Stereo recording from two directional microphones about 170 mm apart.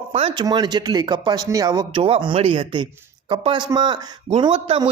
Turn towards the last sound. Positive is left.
turn(degrees=-30)  # may be behind; listen again after turning